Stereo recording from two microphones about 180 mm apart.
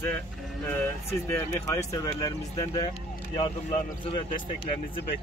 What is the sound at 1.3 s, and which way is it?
Speech, 15° left (ahead or behind).